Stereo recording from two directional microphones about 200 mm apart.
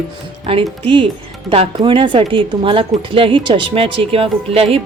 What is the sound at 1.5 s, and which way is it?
A woman's voice, 25° right (ahead or behind).